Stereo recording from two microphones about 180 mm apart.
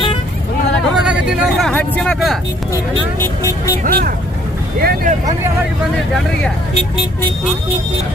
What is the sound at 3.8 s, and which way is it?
Speech, 55° right (ahead or behind).